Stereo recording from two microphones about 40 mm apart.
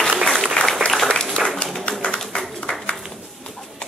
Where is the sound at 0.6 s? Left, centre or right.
Left.